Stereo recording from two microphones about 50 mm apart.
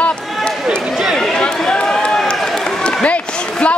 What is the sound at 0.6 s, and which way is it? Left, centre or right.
Speech, centre.